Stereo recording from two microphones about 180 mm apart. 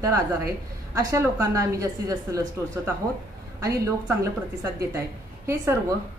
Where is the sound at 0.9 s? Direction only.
15° right (ahead or behind).